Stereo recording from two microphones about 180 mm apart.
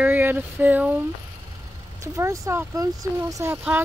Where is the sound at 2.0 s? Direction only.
15° right (ahead or behind).